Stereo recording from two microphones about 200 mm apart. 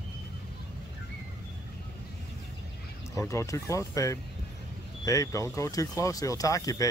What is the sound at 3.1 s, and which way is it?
Speech, 15° left (ahead or behind).